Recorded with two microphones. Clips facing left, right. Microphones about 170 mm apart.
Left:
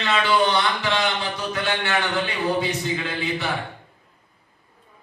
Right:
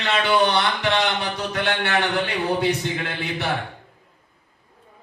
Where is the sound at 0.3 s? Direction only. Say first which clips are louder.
Right 2 dB; 65° right (ahead or behind).